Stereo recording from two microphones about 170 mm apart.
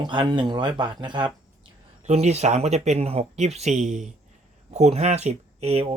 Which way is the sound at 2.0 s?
40° right (ahead or behind).